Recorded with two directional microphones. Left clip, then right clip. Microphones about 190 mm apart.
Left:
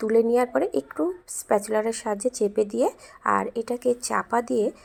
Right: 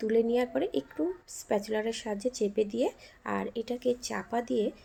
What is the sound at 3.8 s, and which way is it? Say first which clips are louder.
Speech: left 6 dB; 30° left (ahead or behind).